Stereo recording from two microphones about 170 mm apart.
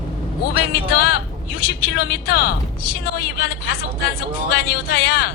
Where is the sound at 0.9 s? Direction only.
65° left (ahead or behind).